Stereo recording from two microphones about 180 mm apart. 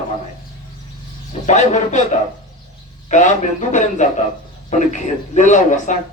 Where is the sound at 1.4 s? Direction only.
40° left (ahead or behind).